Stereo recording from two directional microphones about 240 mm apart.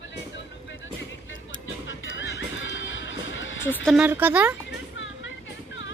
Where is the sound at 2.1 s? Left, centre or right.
Left.